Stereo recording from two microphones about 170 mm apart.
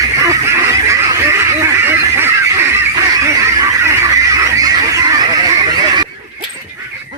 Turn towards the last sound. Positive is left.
turn(degrees=-25)  # may be behind; listen again after turning